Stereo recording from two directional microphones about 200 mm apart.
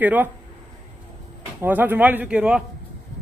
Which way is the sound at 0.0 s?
10° right (ahead or behind).